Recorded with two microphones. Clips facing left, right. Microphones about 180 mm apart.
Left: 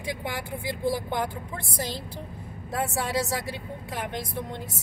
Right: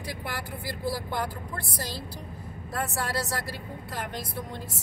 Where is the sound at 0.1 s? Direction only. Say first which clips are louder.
Left 4 dB; 20° left (ahead or behind).